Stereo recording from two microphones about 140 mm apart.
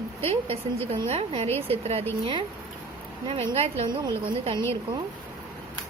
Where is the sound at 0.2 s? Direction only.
45° right (ahead or behind).